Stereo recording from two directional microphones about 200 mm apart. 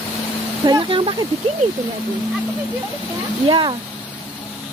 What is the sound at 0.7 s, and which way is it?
Speech, 25° right (ahead or behind).